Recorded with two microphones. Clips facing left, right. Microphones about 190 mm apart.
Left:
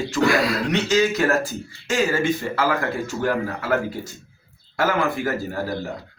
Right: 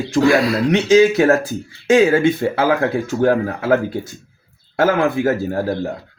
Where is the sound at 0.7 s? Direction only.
55° right (ahead or behind).